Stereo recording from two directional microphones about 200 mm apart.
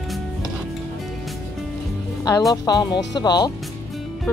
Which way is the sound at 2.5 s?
20° left (ahead or behind).